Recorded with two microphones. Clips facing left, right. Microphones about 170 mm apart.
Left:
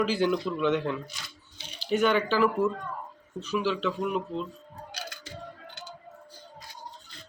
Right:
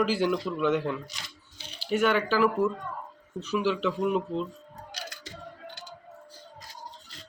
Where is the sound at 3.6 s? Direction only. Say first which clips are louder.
Right 3 dB; 15° right (ahead or behind).